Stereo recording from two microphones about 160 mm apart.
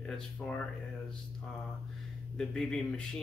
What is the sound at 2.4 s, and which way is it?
Speech, 5° left (ahead or behind).